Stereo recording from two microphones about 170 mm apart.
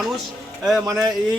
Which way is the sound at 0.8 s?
20° right (ahead or behind).